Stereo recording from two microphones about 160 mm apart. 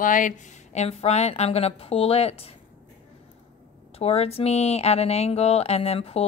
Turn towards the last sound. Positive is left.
turn(degrees=40)  # may be behind; listen again after turning